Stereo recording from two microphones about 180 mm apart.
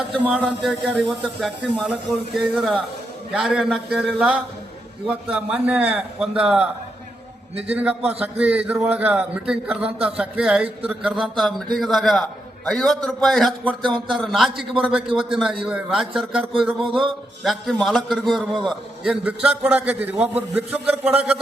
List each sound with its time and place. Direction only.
0.1 s a man's voice: centre (ahead or behind)
7.7 s a man's voice: 10° right (ahead or behind)